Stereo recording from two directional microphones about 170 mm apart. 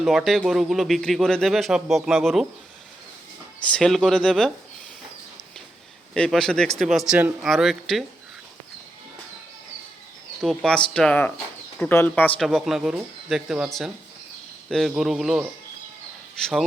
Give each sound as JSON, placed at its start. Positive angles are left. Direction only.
{"t": 0.0, "sound": "speech", "side_deg": 0}
{"t": 3.7, "sound": "speech", "side_deg": 5}
{"t": 6.1, "sound": "speech", "side_deg": 5}
{"t": 10.4, "sound": "speech", "side_deg": 0}